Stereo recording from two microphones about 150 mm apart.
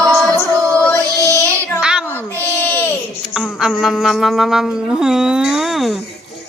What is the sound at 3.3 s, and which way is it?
Music, 5° right (ahead or behind).